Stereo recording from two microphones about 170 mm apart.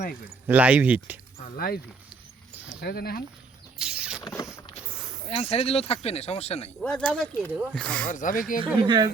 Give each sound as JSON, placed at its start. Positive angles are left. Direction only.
{"t": 0.4, "sound": "speech", "side_deg": -10}
{"t": 1.5, "sound": "speech", "side_deg": 60}
{"t": 2.8, "sound": "speech", "side_deg": 65}
{"t": 3.8, "sound": "a sound", "side_deg": -5}
{"t": 4.2, "sound": "speech", "side_deg": 20}
{"t": 5.2, "sound": "speech", "side_deg": 35}
{"t": 6.8, "sound": "speech", "side_deg": 5}
{"t": 8.0, "sound": "speech", "side_deg": 50}
{"t": 8.6, "sound": "speech", "side_deg": -25}